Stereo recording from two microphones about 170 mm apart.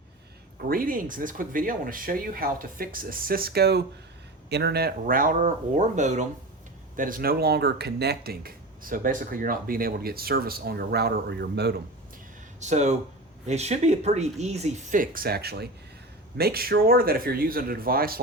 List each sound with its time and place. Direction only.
0.6 s speech: 60° right (ahead or behind); by 11.8 s 75° right (ahead or behind)
12.5 s speech: 45° right (ahead or behind); by 18.2 s 60° right (ahead or behind)